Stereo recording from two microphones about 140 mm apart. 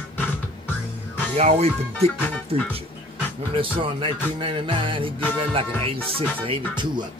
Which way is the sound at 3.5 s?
35° right (ahead or behind).